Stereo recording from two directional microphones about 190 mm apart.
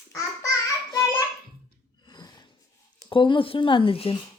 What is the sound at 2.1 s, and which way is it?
Gasp, 20° left (ahead or behind).